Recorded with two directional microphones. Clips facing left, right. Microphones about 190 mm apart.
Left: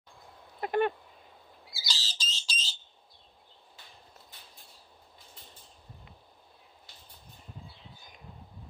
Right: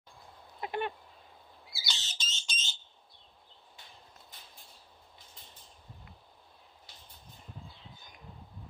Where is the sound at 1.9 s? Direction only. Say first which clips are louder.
Left 2 dB; 35° left (ahead or behind).